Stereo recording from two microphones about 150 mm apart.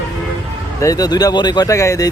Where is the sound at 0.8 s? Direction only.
25° left (ahead or behind).